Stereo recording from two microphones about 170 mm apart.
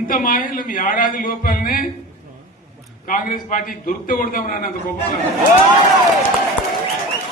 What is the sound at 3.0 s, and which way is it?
A man's voice, 50° left (ahead or behind).